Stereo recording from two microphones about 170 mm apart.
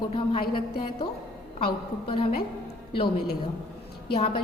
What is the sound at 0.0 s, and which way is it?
A woman's voice, 30° left (ahead or behind).